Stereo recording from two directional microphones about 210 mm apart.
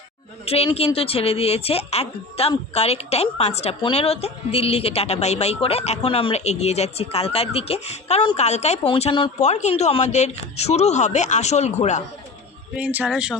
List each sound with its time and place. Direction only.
0.4 s a woman's voice: 30° left (ahead or behind)
12.7 s speech: 10° right (ahead or behind)